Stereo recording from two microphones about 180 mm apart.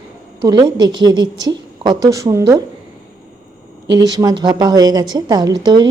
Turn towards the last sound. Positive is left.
turn(degrees=-25)  # may be behind; listen again after turning